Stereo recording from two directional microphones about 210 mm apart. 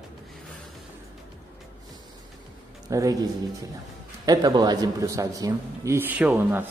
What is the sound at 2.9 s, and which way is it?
Speech, 15° right (ahead or behind).